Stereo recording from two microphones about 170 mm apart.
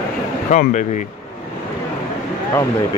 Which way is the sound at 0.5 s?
45° left (ahead or behind).